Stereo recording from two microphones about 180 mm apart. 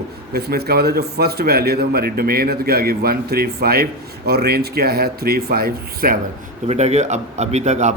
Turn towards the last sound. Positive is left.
turn(degrees=-40)  # may be behind; listen again after turning